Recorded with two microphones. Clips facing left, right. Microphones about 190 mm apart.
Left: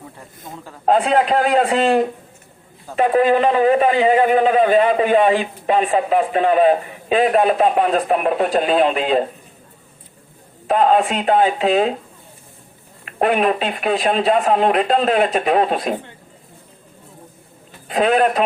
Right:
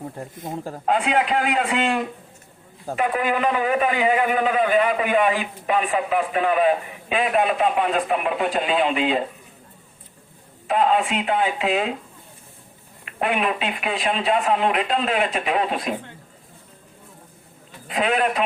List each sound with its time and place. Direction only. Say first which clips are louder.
0.2 s speech: right 6 dB; 45° right (ahead or behind)
0.9 s a man's voice: left 6 dB; 35° left (ahead or behind)
10.7 s a man's voice: left 4 dB; 40° left (ahead or behind)
13.1 s a man's voice: left 6 dB; 40° left (ahead or behind)
17.8 s a man's voice: left 6 dB; 40° left (ahead or behind)